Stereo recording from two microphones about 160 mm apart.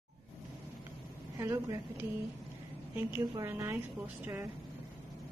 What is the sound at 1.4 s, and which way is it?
Speech, 20° right (ahead or behind).